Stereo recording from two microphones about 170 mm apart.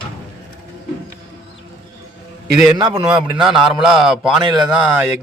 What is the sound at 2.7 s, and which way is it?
Speech, 25° right (ahead or behind).